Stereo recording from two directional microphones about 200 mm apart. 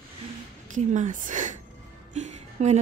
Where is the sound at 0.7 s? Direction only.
40° right (ahead or behind).